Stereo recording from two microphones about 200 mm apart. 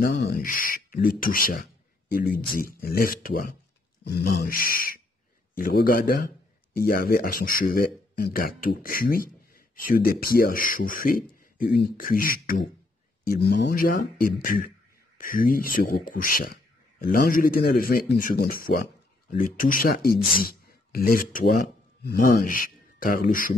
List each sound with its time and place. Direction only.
0.1 s speech: 55° left (ahead or behind)